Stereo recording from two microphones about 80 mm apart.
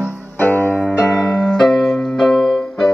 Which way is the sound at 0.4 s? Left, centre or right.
Left.